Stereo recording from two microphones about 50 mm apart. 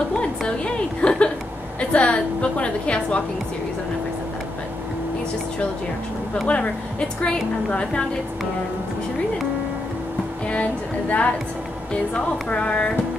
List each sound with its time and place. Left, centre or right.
0.1 s a sound: centre
1.8 s a woman's voice: left
6.4 s speech: left
10.4 s speech: left